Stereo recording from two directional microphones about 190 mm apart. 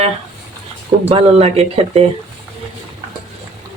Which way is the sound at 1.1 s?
35° right (ahead or behind).